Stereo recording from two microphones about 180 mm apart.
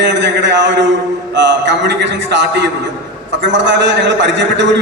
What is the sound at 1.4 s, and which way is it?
A man's voice, 80° right.